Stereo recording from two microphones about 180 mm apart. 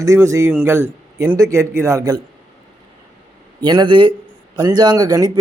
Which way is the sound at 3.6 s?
25° right (ahead or behind).